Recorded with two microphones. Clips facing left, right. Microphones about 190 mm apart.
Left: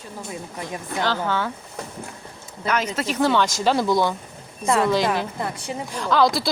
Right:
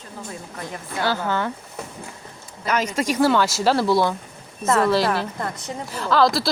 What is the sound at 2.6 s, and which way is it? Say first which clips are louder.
Speech: right 2 dB; 10° right (ahead or behind).